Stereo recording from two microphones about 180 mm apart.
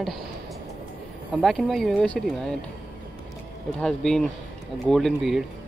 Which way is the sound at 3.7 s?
5° left (ahead or behind).